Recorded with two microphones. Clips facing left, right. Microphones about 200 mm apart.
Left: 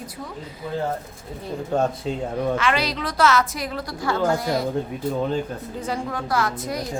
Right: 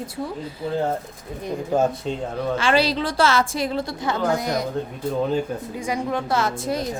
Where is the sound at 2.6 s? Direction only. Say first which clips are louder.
Right 4 dB; 30° right (ahead or behind).